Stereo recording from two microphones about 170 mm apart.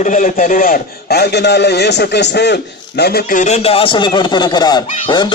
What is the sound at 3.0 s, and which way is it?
Speech, 65° left (ahead or behind).